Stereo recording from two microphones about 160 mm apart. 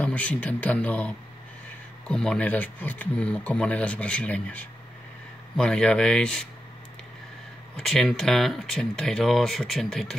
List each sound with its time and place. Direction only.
0.0 s speech: 10° left (ahead or behind)
7.7 s speech: centre (ahead or behind)